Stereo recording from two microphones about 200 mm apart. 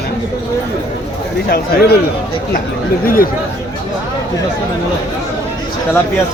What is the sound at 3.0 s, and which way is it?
Speech, 45° left (ahead or behind).